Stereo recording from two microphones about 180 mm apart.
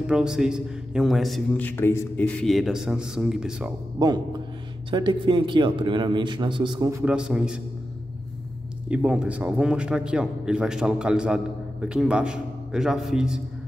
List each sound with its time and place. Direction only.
0.0 s a man's voice: 5° right (ahead or behind)
4.0 s a man's voice: 20° right (ahead or behind)
7.1 s a man's voice: 5° right (ahead or behind)
8.8 s a man's voice: 5° right (ahead or behind)